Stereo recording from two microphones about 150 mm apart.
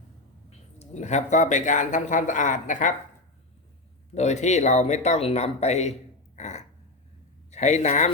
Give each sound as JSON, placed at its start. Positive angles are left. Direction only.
{"t": 0.8, "sound": "speech", "side_deg": 50}
{"t": 4.1, "sound": "speech", "side_deg": 50}